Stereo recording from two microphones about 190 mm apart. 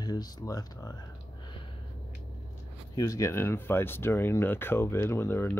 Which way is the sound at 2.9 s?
20° left (ahead or behind).